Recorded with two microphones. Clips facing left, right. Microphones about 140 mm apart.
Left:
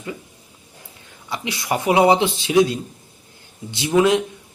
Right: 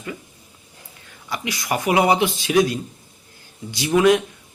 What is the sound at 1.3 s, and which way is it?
A man's voice, 25° left (ahead or behind).